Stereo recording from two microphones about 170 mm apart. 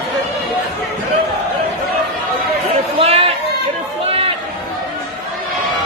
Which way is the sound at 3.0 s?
35° right (ahead or behind).